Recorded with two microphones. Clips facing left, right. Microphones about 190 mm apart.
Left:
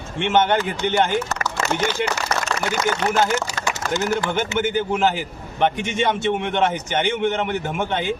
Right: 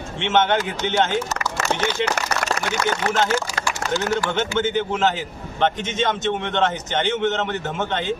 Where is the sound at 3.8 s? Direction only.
50° left (ahead or behind).